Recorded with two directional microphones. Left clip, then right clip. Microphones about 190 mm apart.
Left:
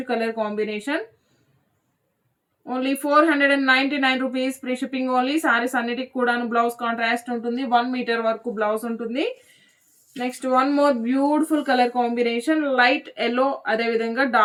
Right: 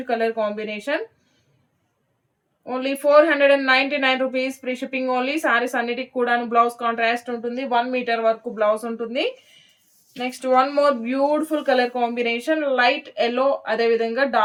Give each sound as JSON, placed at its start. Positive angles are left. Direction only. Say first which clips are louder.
{"t": 0.0, "sound": "speech", "louder": "right 2 dB", "side_deg": -45}
{"t": 2.6, "sound": "a woman's voice", "louder": "right 3 dB", "side_deg": -40}